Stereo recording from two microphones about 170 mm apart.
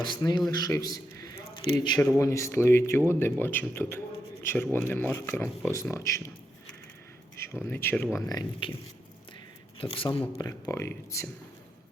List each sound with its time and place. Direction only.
0.0 s a man's voice: 25° left (ahead or behind)
7.3 s speech: 15° left (ahead or behind)
8.3 s speech: 25° left (ahead or behind)
9.7 s speech: 30° left (ahead or behind)
10.3 s speech: 20° left (ahead or behind)